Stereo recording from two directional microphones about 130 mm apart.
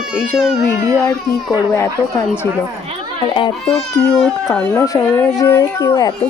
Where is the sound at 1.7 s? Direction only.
20° left (ahead or behind).